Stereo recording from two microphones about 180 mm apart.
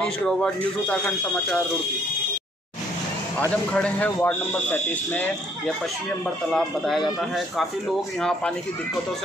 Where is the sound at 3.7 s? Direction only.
5° left (ahead or behind).